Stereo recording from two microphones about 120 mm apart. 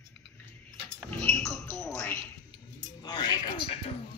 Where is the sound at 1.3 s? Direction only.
5° left (ahead or behind).